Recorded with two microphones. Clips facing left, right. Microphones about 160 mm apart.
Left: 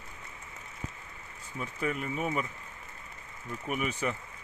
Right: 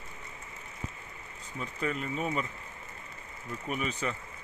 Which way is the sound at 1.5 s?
10° left (ahead or behind).